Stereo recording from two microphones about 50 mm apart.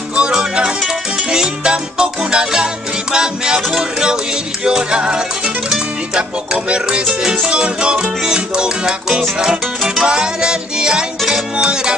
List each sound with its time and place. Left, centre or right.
0.1 s music: centre